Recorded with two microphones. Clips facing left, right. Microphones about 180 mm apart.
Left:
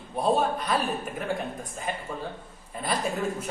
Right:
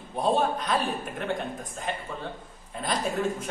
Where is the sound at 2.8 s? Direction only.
5° left (ahead or behind).